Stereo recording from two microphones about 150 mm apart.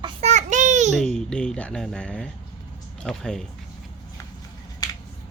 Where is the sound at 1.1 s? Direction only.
5° left (ahead or behind).